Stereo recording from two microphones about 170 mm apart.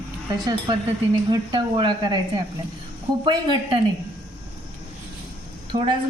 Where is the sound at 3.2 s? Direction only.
30° right (ahead or behind).